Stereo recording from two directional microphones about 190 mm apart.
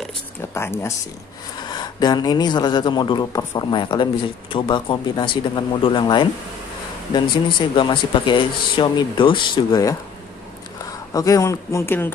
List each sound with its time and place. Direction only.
0.0 s a sound: 10° left (ahead or behind)
1.6 s speech: 20° left (ahead or behind)
11.1 s speech: 20° left (ahead or behind)